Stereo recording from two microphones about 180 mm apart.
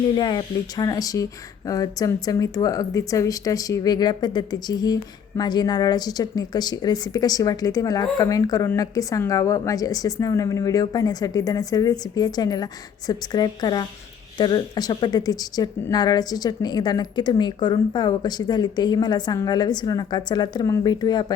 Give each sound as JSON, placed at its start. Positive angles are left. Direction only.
{"t": 0.2, "sound": "speech", "side_deg": 25}